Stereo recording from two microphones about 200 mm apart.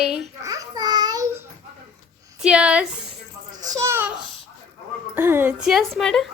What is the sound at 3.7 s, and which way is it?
Babbling, 15° right (ahead or behind).